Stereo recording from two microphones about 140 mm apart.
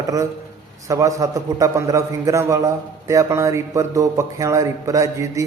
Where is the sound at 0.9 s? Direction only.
25° right (ahead or behind).